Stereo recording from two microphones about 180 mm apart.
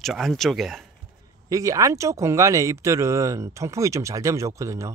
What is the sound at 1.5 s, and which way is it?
Speech, 20° right (ahead or behind).